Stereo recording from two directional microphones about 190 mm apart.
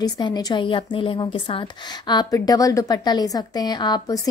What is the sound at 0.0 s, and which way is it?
A woman's voice, 20° left (ahead or behind).